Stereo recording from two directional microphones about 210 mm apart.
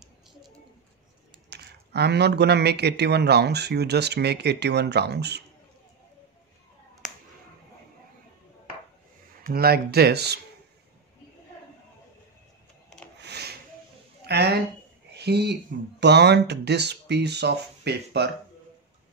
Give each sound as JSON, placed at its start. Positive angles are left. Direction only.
{"t": 1.5, "sound": "speech", "side_deg": -50}
{"t": 9.4, "sound": "speech", "side_deg": -45}
{"t": 13.2, "sound": "a sound", "side_deg": -50}
{"t": 14.2, "sound": "speech", "side_deg": -50}